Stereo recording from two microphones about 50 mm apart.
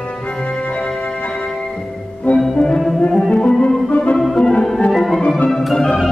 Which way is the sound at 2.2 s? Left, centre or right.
Centre.